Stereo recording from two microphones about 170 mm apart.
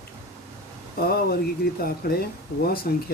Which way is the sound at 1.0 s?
65° left (ahead or behind).